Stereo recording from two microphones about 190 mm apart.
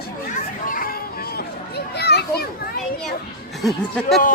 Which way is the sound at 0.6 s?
50° left (ahead or behind).